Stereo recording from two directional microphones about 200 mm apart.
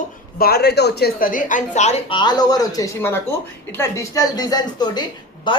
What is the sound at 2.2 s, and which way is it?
A woman's voice, 20° left (ahead or behind).